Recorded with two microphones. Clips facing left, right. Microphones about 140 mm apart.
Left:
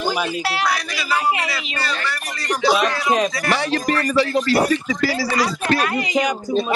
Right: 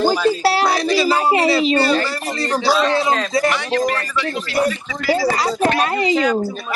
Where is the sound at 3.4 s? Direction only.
35° left (ahead or behind).